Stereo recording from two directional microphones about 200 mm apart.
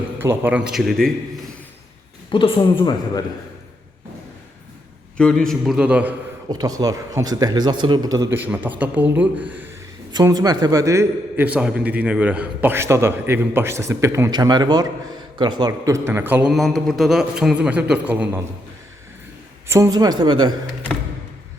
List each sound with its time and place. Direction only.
0.2 s a man's voice: 10° right (ahead or behind)
2.3 s speech: 25° left (ahead or behind)
5.1 s a man's voice: 5° left (ahead or behind)
6.5 s a man's voice: 20° right (ahead or behind)
10.1 s a man's voice: 20° right (ahead or behind)
19.6 s speech: 15° right (ahead or behind)